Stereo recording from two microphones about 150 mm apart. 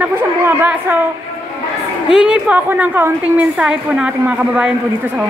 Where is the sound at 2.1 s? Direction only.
5° right (ahead or behind).